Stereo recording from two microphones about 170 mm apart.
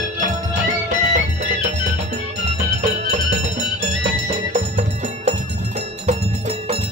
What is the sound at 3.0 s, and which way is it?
Music, 40° right (ahead or behind).